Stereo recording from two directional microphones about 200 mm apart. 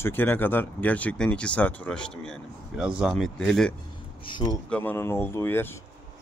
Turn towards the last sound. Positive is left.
turn(degrees=10)  # may be behind; listen again after turning